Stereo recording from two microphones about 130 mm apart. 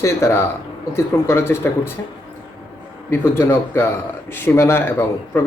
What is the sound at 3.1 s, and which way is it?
Speech, 20° left (ahead or behind).